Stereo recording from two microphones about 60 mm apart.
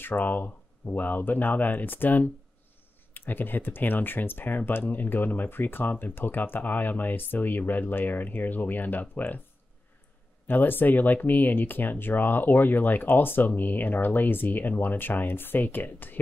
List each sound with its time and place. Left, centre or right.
0.0 s speech: left
10.4 s speech: left